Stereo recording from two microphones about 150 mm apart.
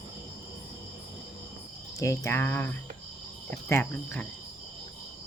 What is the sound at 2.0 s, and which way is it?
Speech, 20° left (ahead or behind).